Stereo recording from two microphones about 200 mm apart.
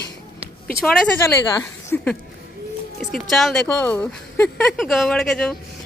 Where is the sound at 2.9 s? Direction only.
Centre (ahead or behind).